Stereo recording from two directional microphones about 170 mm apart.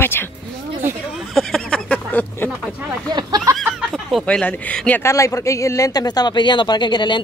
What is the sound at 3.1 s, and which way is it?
Speech, 25° right (ahead or behind).